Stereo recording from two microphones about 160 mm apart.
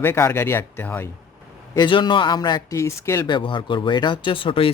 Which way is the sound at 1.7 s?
30° left (ahead or behind).